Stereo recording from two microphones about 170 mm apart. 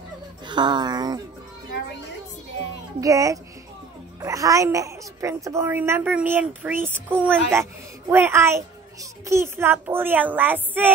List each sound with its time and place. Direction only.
0.5 s speech: 25° right (ahead or behind)
3.0 s a woman's voice: 20° right (ahead or behind)